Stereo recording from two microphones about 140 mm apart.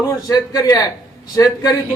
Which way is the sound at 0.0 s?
25° left (ahead or behind).